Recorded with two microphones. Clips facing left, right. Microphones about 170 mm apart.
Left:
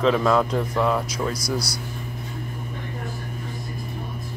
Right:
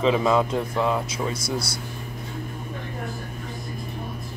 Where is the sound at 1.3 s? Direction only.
25° right (ahead or behind).